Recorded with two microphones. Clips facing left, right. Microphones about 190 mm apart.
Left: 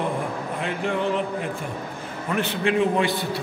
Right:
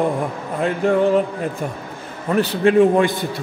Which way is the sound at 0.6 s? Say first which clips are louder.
Right 10 dB; 45° right (ahead or behind).